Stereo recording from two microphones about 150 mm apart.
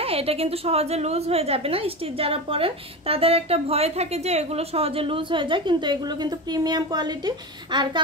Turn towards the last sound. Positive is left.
turn(degrees=-30)  # may be behind; listen again after turning